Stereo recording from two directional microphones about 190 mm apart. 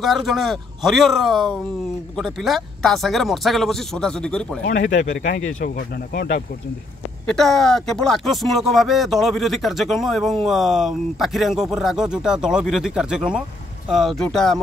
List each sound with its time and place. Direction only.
0.0 s speech: centre (ahead or behind)
4.7 s speech: 75° left (ahead or behind)
5.0 s speech: 50° left (ahead or behind)
7.2 s speech: centre (ahead or behind)